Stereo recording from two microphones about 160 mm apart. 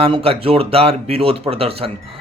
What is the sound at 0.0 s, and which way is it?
Speech, 35° right (ahead or behind).